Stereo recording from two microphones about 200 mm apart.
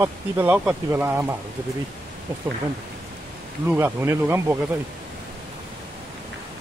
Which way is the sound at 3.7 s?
10° right (ahead or behind).